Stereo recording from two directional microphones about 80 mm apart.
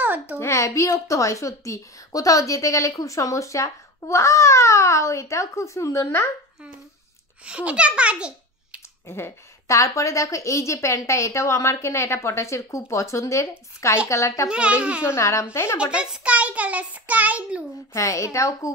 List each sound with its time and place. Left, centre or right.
0.0 s a sound: right
0.4 s a woman's voice: left
7.4 s a child's voice: centre
9.0 s a woman's voice: left
14.5 s a child's voice: centre
15.0 s a woman's voice: left
15.8 s a child's voice: centre
17.9 s a woman's voice: left